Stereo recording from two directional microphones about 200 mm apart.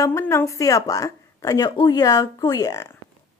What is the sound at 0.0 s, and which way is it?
A woman's voice, 15° left (ahead or behind).